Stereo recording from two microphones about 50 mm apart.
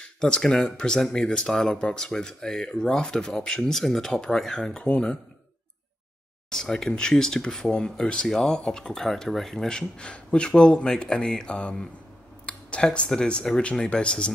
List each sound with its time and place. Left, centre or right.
0.0 s speech: centre
4.8 s speech: left
6.5 s speech: centre